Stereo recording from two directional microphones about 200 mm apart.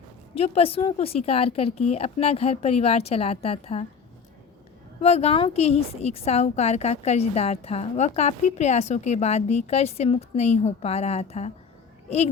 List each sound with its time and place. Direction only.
0.3 s a woman's voice: 30° left (ahead or behind)
4.9 s a woman's voice: 30° left (ahead or behind)